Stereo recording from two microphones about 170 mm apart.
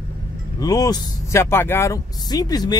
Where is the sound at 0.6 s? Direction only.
20° left (ahead or behind).